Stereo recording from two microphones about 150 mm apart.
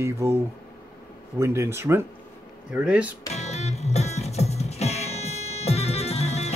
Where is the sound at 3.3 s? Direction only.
45° left (ahead or behind).